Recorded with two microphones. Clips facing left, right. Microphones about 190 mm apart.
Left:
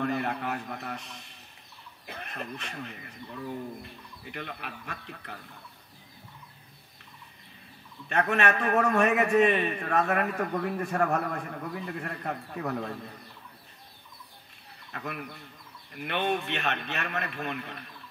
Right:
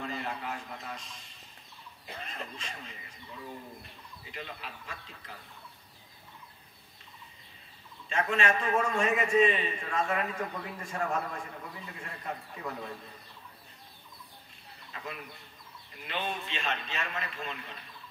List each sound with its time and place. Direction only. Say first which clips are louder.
0.0 s a man's voice: left 7 dB; 60° left (ahead or behind)
4.2 s a man's voice: left 4 dB; 60° left (ahead or behind)
8.1 s a man's voice: left 3 dB; 65° left (ahead or behind)
14.9 s a man's voice: left 5 dB; 60° left (ahead or behind)